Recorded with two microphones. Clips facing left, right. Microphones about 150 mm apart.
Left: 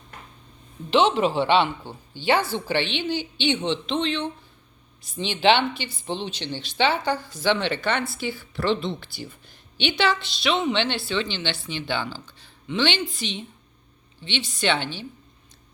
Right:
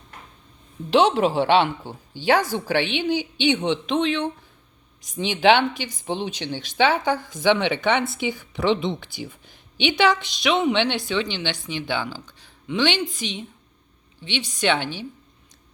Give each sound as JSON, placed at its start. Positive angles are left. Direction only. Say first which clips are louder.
{"t": 0.9, "sound": "a woman's voice", "louder": "right 2 dB", "side_deg": -10}